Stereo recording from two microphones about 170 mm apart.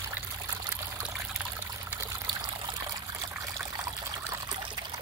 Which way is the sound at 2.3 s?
25° right (ahead or behind).